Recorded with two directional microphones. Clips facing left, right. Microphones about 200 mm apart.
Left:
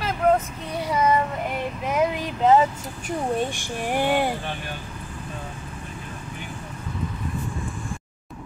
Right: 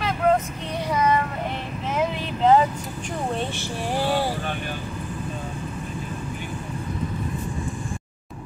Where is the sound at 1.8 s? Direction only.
10° left (ahead or behind).